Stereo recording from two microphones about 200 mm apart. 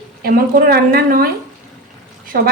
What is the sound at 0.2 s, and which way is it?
A woman's voice, 50° right (ahead or behind).